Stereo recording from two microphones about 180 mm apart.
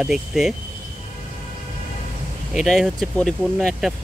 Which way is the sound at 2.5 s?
Centre (ahead or behind).